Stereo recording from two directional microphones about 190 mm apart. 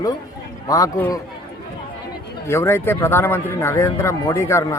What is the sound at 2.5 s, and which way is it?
Speech, 15° left (ahead or behind).